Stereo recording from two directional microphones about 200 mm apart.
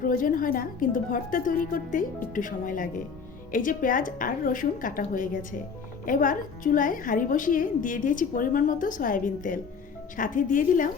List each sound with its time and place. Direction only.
0.0 s a woman's voice: 45° left (ahead or behind)